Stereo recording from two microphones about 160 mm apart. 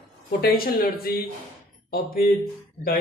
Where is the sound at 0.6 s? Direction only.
70° left (ahead or behind).